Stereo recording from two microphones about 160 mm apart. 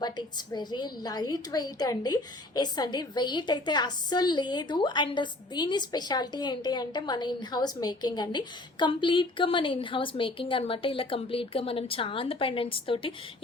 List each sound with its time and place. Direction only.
0.0 s a woman's voice: 25° left (ahead or behind)